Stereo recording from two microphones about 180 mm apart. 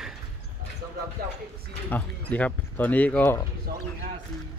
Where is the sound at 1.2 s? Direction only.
60° right (ahead or behind).